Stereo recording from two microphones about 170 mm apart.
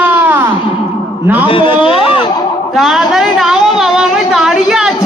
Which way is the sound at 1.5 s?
30° left (ahead or behind).